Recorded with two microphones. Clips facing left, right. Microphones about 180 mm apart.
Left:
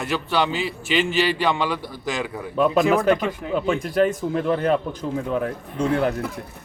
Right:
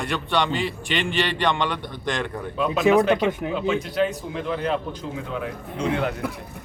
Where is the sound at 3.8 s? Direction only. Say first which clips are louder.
Left 4 dB; 50° left (ahead or behind).